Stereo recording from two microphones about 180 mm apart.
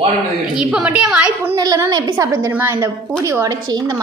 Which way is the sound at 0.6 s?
5° right (ahead or behind).